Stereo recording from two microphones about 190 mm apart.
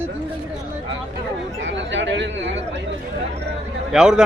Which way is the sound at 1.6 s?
75° right (ahead or behind).